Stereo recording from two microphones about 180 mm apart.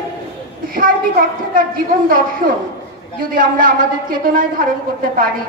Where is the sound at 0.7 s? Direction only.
50° right (ahead or behind).